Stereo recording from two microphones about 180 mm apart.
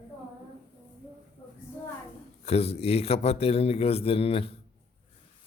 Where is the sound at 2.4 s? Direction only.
35° left (ahead or behind).